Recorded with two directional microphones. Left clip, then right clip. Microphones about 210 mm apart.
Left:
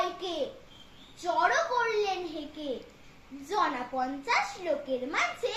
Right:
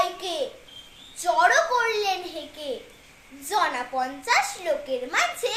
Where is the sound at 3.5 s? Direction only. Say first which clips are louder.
Right 5 dB; 20° right (ahead or behind).